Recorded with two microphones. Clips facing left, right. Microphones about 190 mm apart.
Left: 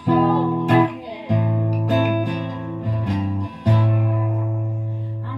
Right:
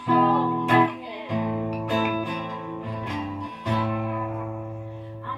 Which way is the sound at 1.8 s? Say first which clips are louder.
Left 7 dB; 35° left (ahead or behind).